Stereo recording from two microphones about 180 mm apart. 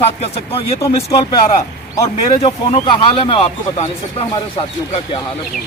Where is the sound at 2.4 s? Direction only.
30° left (ahead or behind).